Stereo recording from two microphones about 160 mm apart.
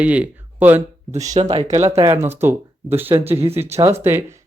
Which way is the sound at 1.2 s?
45° right (ahead or behind).